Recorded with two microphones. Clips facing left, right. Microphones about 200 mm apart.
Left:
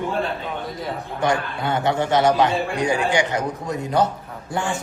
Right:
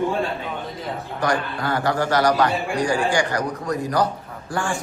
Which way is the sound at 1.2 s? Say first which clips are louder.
Left 1 dB; 25° left (ahead or behind).